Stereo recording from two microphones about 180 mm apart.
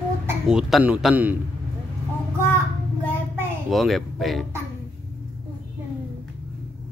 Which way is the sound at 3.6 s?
Centre (ahead or behind).